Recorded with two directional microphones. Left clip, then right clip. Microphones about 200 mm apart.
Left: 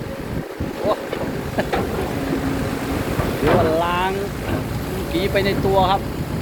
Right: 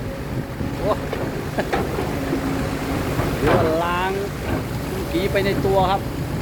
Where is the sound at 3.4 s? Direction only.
Centre (ahead or behind).